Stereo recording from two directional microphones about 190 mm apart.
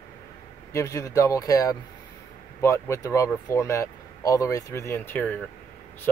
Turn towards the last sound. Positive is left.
turn(degrees=10)  # may be behind; listen again after turning